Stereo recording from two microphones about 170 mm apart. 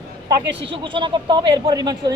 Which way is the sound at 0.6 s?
30° right (ahead or behind).